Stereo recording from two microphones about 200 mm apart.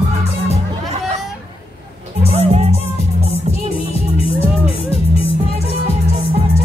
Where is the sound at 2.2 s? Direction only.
30° right (ahead or behind).